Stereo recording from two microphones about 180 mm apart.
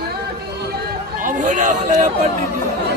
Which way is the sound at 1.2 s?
40° right (ahead or behind).